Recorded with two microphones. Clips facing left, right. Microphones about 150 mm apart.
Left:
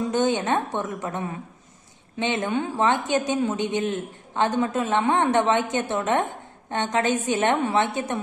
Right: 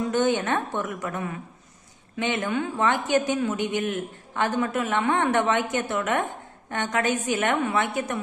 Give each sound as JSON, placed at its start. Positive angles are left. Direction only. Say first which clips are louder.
{"t": 0.1, "sound": "a woman's voice", "louder": "left 1 dB", "side_deg": 20}